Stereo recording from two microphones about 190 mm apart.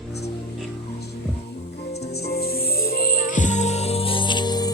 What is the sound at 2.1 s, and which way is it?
Music, 55° left (ahead or behind).